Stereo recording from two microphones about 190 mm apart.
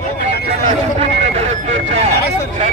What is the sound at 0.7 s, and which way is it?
Vehicle, 35° right (ahead or behind).